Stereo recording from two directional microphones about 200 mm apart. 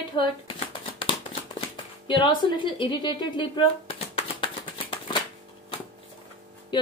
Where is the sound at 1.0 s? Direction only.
25° left (ahead or behind).